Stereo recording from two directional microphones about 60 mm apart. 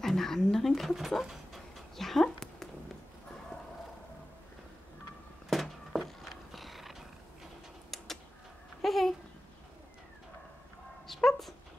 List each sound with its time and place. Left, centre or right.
0.0 s dog: centre
5.5 s a sound: centre
8.8 s babbling: centre
11.2 s dog: centre